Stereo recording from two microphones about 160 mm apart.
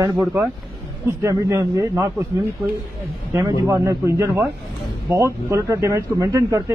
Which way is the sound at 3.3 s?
20° right (ahead or behind).